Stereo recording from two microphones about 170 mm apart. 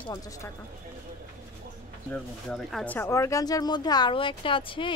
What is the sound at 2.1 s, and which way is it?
Speech, centre (ahead or behind).